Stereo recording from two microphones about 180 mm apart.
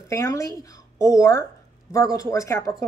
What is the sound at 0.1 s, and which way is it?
A woman's voice, 20° left (ahead or behind).